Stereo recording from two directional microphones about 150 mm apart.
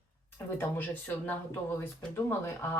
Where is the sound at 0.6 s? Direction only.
15° left (ahead or behind).